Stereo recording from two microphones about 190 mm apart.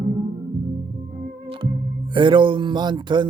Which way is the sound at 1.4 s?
30° right (ahead or behind).